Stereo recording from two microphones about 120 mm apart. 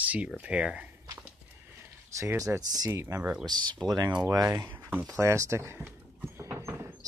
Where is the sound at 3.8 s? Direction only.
30° right (ahead or behind).